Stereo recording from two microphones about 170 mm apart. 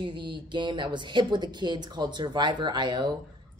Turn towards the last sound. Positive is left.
turn(degrees=-25)  # may be behind; listen again after turning